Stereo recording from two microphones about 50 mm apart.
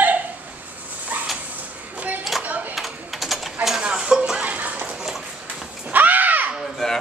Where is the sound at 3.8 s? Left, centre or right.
Centre.